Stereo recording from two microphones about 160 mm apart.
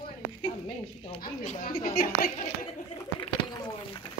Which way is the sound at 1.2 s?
50° left (ahead or behind).